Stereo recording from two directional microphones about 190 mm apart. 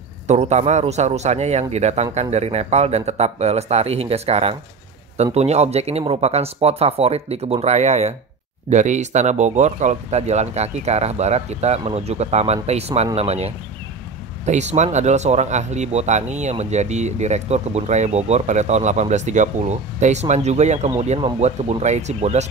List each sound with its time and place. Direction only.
0.3 s speech: 35° right (ahead or behind)